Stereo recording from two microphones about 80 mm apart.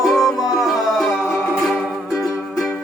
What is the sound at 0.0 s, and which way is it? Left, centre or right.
Music, centre.